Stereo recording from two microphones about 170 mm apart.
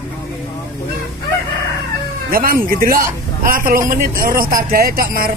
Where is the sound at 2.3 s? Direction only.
60° right (ahead or behind).